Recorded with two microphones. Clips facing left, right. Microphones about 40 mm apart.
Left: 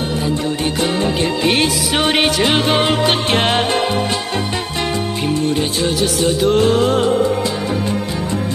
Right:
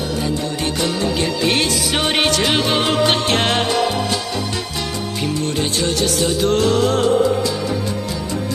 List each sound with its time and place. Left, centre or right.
0.8 s music: left
1.5 s music: centre
5.6 s music: centre